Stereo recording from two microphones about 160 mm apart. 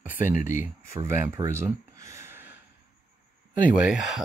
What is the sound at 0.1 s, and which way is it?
Speech, 15° right (ahead or behind).